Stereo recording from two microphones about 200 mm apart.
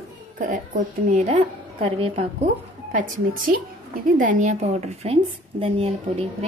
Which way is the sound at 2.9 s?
40° right (ahead or behind).